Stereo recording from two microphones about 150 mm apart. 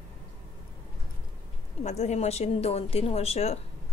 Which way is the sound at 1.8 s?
50° left (ahead or behind).